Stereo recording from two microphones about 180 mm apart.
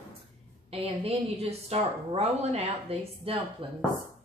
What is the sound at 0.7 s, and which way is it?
A woman's voice, 30° right (ahead or behind).